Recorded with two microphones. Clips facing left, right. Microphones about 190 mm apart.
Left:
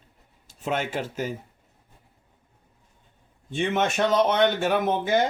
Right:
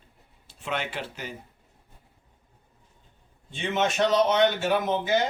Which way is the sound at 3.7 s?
55° left (ahead or behind).